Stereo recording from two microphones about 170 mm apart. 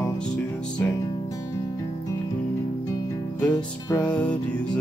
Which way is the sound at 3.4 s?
20° left (ahead or behind).